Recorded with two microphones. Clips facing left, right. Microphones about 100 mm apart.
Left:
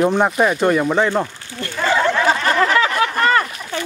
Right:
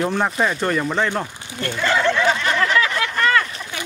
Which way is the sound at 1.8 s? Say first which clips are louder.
Left 2 dB; 40° left (ahead or behind).